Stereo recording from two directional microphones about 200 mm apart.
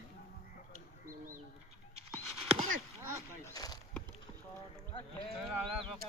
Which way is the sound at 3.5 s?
20° left (ahead or behind).